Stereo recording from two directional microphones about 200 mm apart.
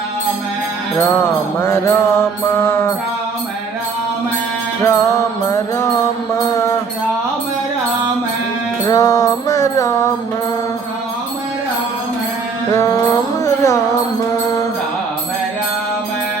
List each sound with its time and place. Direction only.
1.6 s mantra: 10° left (ahead or behind)
2.6 s music: 10° left (ahead or behind)
4.8 s music: 15° left (ahead or behind)
8.9 s music: 15° left (ahead or behind)
12.7 s music: 15° left (ahead or behind)